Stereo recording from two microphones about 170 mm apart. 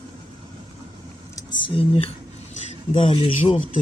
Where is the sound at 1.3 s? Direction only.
25° left (ahead or behind).